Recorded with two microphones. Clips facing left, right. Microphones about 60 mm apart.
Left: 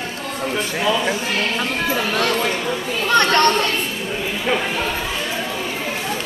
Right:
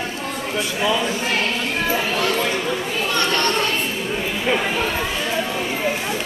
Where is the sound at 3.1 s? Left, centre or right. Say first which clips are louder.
Left 7 dB; left.